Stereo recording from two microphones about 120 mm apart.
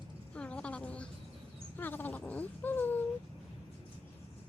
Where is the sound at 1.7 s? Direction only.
15° left (ahead or behind).